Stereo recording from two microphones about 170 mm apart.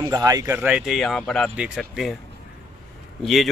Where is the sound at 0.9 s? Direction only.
Centre (ahead or behind).